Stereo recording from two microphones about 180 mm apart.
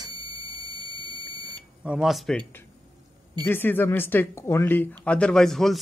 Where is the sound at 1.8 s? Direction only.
5° right (ahead or behind).